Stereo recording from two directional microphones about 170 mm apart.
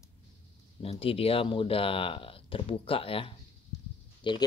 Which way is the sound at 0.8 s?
35° left (ahead or behind).